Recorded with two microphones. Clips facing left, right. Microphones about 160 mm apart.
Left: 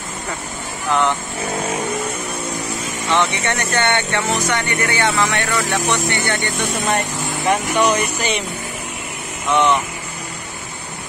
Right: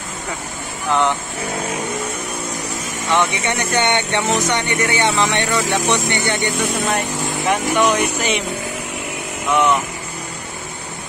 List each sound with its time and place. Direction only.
3.2 s speech: 15° right (ahead or behind)
6.6 s speech: centre (ahead or behind)
9.5 s speech: 5° right (ahead or behind)